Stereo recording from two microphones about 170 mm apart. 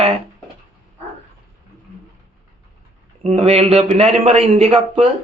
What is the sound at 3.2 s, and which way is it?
A man's voice, 35° right (ahead or behind).